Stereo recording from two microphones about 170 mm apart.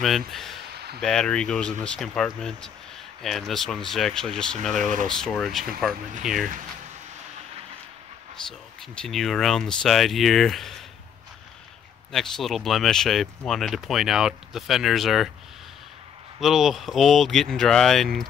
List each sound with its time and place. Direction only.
0.3 s speech: centre (ahead or behind)
0.7 s a sound: 70° right (ahead or behind)
1.0 s speech: 5° left (ahead or behind)
8.5 s speech: 5° left (ahead or behind)
12.1 s speech: centre (ahead or behind)
16.3 s speech: centre (ahead or behind)